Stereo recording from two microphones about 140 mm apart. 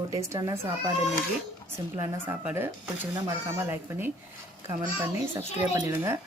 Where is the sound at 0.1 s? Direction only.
25° right (ahead or behind).